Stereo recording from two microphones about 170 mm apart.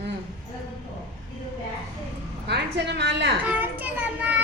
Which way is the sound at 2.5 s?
80° right.